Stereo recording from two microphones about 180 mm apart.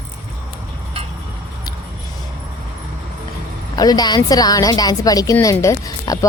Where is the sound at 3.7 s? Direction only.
20° left (ahead or behind).